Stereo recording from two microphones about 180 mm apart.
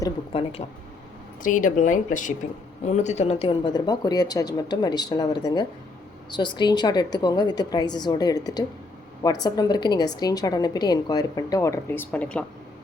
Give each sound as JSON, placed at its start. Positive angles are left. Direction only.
{"t": 0.3, "sound": "speech", "side_deg": 30}
{"t": 1.4, "sound": "a woman's voice", "side_deg": 45}